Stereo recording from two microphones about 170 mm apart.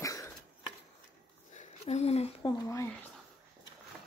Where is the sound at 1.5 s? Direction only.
40° left (ahead or behind).